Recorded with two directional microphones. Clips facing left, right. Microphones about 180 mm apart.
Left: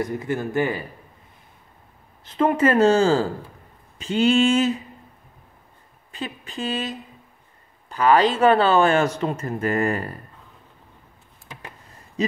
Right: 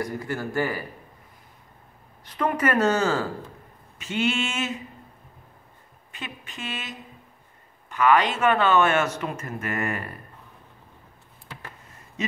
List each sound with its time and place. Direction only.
0.0 s speech: 20° left (ahead or behind)
2.2 s speech: 25° left (ahead or behind)
6.1 s speech: 35° left (ahead or behind)
12.2 s hoot: 35° left (ahead or behind)